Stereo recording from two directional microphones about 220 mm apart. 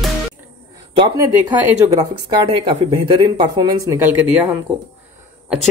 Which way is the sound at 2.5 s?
20° right (ahead or behind).